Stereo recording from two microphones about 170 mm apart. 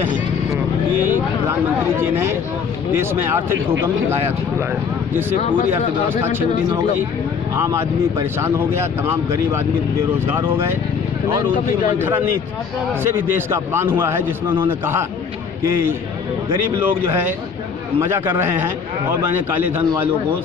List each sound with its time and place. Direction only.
1.0 s speech: 15° right (ahead or behind)
6.7 s speech: 15° right (ahead or behind)
12.0 s speech: 10° right (ahead or behind)
16.8 s speech: 15° right (ahead or behind)